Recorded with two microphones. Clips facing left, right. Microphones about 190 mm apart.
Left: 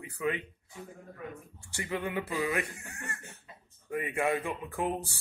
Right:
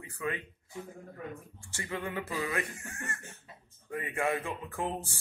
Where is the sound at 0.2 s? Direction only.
20° left (ahead or behind).